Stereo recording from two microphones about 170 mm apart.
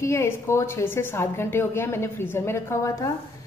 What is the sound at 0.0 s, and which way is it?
A woman's voice, 15° left (ahead or behind).